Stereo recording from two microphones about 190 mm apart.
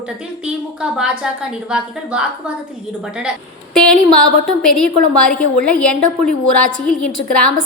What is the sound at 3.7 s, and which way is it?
A woman's voice, 5° left (ahead or behind).